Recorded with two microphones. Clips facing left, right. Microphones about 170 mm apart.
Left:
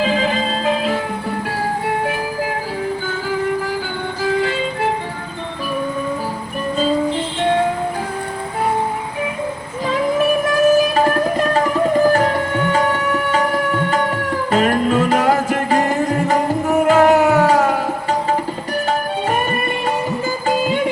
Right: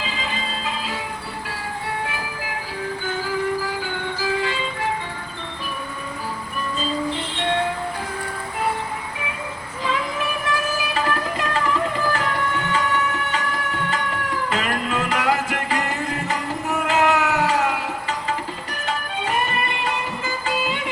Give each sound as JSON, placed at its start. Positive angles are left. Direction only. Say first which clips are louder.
{"t": 0.0, "sound": "music", "louder": "left 11 dB", "side_deg": 55}
{"t": 9.8, "sound": "child singing", "louder": "left 9 dB", "side_deg": 40}
{"t": 10.9, "sound": "music", "louder": "left 8 dB", "side_deg": 45}